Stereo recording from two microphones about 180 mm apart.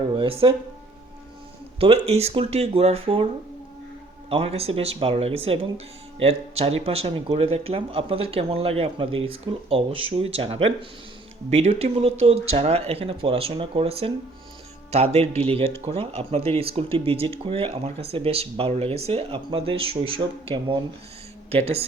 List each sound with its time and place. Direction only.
0.2 s speech: 30° right (ahead or behind)
1.8 s speech: 35° right (ahead or behind)
4.3 s speech: 35° right (ahead or behind)